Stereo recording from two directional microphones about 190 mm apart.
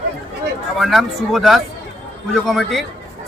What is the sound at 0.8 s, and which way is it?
Speech, centre (ahead or behind).